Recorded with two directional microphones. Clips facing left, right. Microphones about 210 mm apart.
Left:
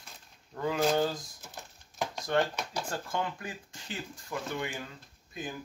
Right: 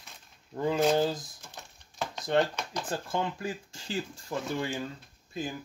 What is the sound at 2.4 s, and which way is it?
Speech, 10° left (ahead or behind).